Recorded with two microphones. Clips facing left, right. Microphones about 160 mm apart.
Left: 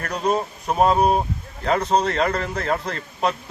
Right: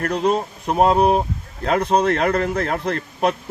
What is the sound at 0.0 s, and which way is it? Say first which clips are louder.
Speech: right 4 dB; 60° right (ahead or behind).